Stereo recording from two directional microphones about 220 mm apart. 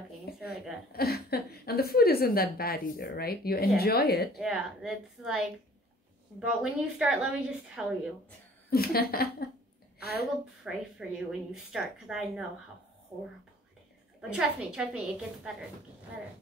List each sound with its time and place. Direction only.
0.5 s a woman's voice: 45° left (ahead or behind)
4.4 s a woman's voice: 5° right (ahead or behind)
6.4 s a woman's voice: 5° right (ahead or behind)
8.6 s a woman's voice: 45° left (ahead or behind)
10.6 s a woman's voice: centre (ahead or behind)
14.3 s a woman's voice: 5° right (ahead or behind)